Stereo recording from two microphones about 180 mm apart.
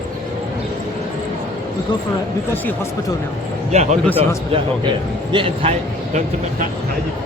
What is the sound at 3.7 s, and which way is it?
Speech, 40° right (ahead or behind).